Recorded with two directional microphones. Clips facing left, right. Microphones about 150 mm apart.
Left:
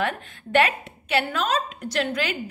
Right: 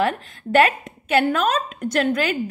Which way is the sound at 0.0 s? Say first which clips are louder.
Right 5 dB; 40° right (ahead or behind).